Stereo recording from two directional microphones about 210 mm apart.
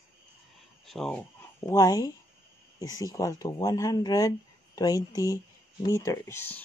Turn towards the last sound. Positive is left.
turn(degrees=10)  # may be behind; listen again after turning